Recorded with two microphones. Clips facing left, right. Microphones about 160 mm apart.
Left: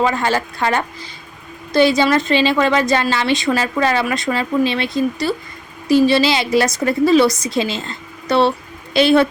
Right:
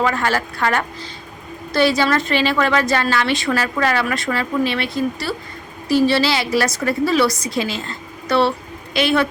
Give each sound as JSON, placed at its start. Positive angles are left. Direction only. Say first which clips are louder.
{"t": 0.0, "sound": "a woman's voice", "louder": "left 2 dB", "side_deg": 20}